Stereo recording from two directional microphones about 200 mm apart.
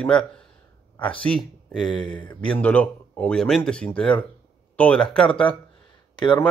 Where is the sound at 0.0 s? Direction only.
5° left (ahead or behind).